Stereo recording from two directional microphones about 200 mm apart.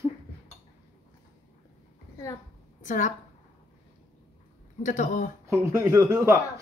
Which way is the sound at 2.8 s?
40° left (ahead or behind).